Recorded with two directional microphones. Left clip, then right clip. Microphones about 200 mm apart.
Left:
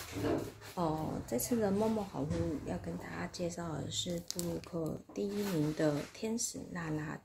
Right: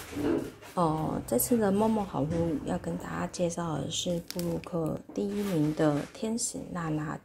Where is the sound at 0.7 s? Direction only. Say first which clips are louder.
Right 7 dB; 25° right (ahead or behind).